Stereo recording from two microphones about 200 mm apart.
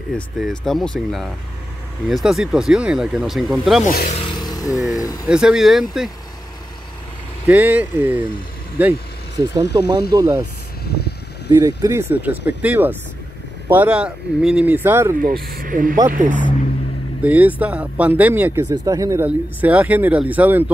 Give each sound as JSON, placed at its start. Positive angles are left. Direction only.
{"t": 0.1, "sound": "speech", "side_deg": 0}
{"t": 4.1, "sound": "vehicle", "side_deg": 25}
{"t": 4.7, "sound": "speech", "side_deg": 0}
{"t": 5.0, "sound": "speech", "side_deg": 20}
{"t": 5.3, "sound": "speech", "side_deg": -5}
{"t": 7.4, "sound": "speech", "side_deg": -5}
{"t": 9.8, "sound": "speech", "side_deg": -20}
{"t": 11.0, "sound": "a sound", "side_deg": 55}
{"t": 11.5, "sound": "speech", "side_deg": -15}
{"t": 15.4, "sound": "speech", "side_deg": -45}
{"t": 17.2, "sound": "speech", "side_deg": -5}